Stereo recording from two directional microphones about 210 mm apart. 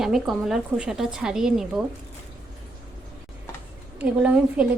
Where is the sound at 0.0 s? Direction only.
Centre (ahead or behind).